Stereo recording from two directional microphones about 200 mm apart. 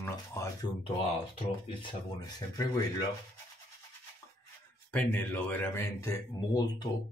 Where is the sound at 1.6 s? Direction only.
20° left (ahead or behind).